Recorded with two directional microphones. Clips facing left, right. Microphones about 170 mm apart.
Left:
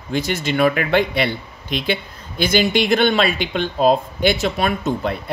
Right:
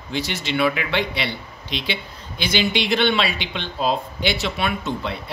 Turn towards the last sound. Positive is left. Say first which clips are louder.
# left 5 dB
turn(degrees=45)  # may be behind; listen again after turning